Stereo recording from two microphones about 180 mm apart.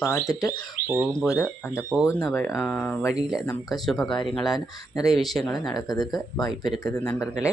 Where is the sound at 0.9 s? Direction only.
10° right (ahead or behind).